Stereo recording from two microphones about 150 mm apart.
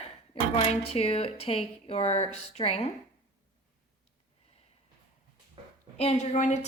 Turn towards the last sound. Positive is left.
turn(degrees=50)  # may be behind; listen again after turning